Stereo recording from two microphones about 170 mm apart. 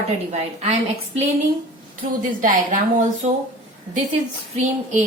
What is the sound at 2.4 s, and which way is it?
Speech, 50° right (ahead or behind).